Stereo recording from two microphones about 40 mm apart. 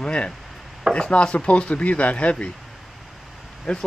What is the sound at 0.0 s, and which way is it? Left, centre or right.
Chopping, left.